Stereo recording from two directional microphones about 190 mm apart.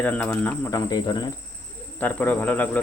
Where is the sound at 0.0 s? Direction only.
10° left (ahead or behind).